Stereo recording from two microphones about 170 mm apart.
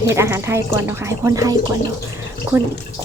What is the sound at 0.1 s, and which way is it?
Speech, 15° right (ahead or behind).